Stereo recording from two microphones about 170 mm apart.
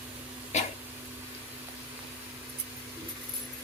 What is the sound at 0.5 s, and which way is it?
Throat clearing, 45° left (ahead or behind).